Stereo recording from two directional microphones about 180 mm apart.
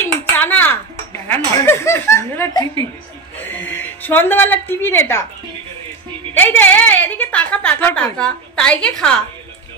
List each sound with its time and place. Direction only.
0.4 s a woman's voice: 10° left (ahead or behind)
6.3 s a woman's voice: 10° left (ahead or behind)